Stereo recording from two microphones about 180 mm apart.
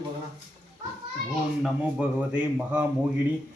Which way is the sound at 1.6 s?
5° right (ahead or behind).